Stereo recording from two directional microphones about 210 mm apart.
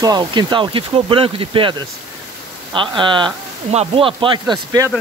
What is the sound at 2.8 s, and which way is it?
Speech, 25° right (ahead or behind).